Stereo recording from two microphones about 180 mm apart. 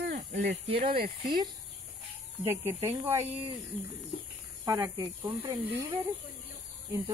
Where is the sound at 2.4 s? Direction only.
10° right (ahead or behind).